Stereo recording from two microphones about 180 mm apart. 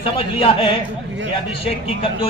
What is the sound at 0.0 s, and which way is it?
A man's voice, 30° left (ahead or behind).